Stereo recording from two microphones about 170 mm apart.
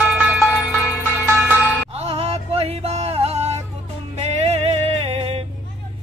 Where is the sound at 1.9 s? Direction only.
35° right (ahead or behind).